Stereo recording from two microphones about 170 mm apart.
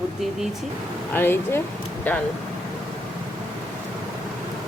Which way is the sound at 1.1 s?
15° left (ahead or behind).